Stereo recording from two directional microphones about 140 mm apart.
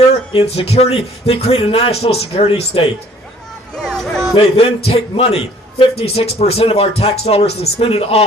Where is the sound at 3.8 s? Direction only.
Centre (ahead or behind).